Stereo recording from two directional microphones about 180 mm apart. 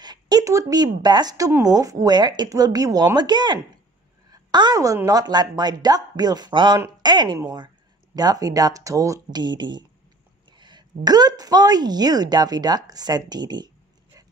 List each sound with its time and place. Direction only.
0.0 s speech: 20° right (ahead or behind)